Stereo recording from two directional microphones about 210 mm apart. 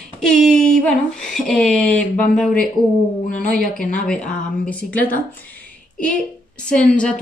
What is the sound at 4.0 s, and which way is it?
A woman's voice, 5° left (ahead or behind).